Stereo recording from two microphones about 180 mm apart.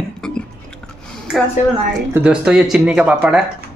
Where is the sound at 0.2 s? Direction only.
5° left (ahead or behind).